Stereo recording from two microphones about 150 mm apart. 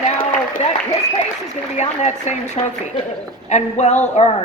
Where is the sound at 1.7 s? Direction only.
50° left (ahead or behind).